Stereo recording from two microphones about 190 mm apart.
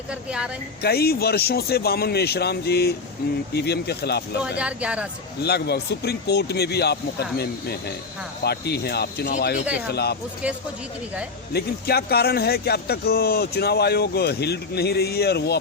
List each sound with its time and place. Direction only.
0.1 s a woman's voice: 5° right (ahead or behind)
0.8 s speech: 55° left (ahead or behind)
4.5 s speech: 5° right (ahead or behind)
5.4 s speech: 60° left (ahead or behind)
10.4 s speech: 5° right (ahead or behind)
11.5 s speech: 55° left (ahead or behind)